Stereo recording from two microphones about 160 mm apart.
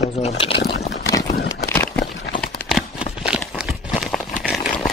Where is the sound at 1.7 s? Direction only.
10° left (ahead or behind).